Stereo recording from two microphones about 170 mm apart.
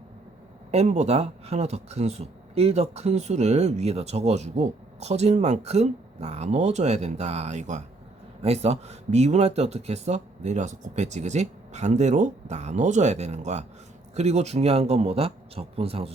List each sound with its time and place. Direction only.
0.7 s speech: 40° right (ahead or behind)